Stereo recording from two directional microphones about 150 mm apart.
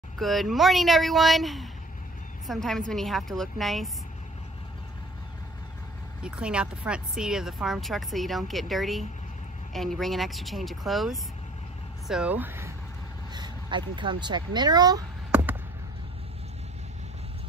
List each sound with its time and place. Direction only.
0.2 s speech: centre (ahead or behind)
6.2 s speech: 5° right (ahead or behind)
13.3 s speech: 30° right (ahead or behind)